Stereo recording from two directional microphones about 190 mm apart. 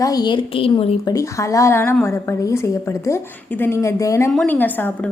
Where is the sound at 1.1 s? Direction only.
15° left (ahead or behind).